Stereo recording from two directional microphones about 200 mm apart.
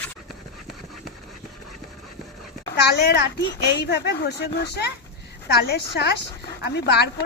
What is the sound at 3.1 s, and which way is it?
Speech, 55° left (ahead or behind).